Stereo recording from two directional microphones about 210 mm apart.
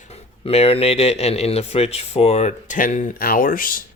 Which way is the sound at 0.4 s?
30° left (ahead or behind).